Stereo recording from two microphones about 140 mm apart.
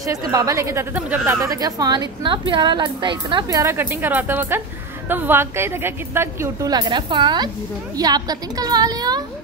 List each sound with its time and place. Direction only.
0.0 s a woman's voice: 25° right (ahead or behind)
1.4 s a woman's voice: 25° right (ahead or behind)
3.4 s a woman's voice: 20° right (ahead or behind)